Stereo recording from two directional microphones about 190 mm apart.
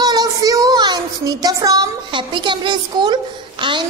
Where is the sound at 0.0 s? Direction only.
20° right (ahead or behind).